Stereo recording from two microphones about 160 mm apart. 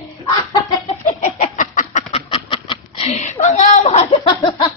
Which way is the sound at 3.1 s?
45° left (ahead or behind).